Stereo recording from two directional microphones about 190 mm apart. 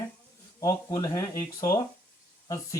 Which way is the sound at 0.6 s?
20° left (ahead or behind).